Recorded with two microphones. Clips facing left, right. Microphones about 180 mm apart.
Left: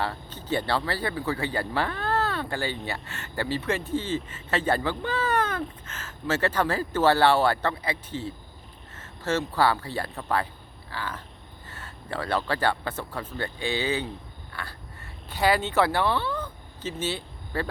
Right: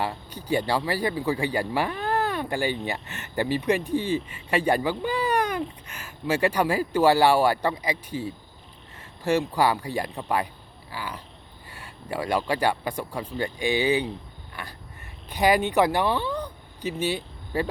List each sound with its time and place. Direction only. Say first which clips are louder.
0.0 s speech: right 1 dB; 15° right (ahead or behind)
14.5 s a sound: even; 15° right (ahead or behind)
15.3 s speech: right 3 dB; 15° right (ahead or behind)